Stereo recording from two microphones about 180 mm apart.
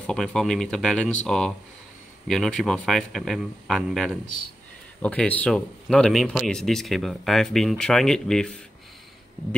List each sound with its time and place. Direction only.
0.0 s speech: 5° left (ahead or behind)